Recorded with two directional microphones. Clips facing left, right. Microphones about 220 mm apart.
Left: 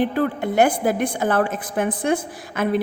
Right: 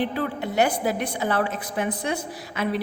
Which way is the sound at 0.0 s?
50° left (ahead or behind).